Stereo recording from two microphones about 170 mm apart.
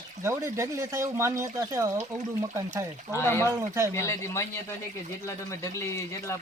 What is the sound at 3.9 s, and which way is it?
A man's voice, 15° left (ahead or behind).